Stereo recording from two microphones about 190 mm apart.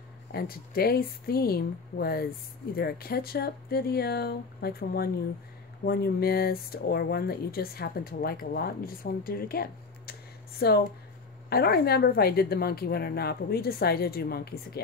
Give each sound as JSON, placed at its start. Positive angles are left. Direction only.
{"t": 0.3, "sound": "speech", "side_deg": 50}